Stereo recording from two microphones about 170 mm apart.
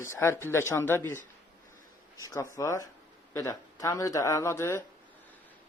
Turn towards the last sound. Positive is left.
turn(degrees=15)  # may be behind; listen again after turning